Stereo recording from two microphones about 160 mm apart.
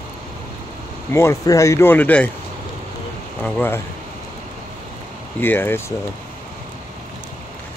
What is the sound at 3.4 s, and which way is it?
Speech, 10° left (ahead or behind).